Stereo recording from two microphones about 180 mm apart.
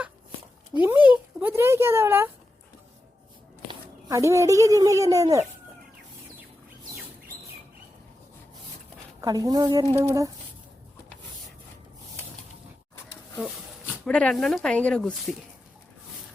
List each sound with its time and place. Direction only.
0.8 s speech: 10° right (ahead or behind)
3.7 s speech: 15° right (ahead or behind)
9.2 s speech: 20° right (ahead or behind)
13.3 s speech: centre (ahead or behind)